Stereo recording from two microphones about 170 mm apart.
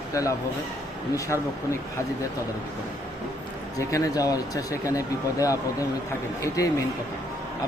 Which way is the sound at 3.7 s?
20° left (ahead or behind).